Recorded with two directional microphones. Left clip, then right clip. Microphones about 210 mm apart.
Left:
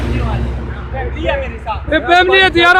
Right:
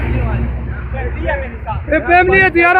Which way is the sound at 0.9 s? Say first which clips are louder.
Left 2 dB; 25° left (ahead or behind).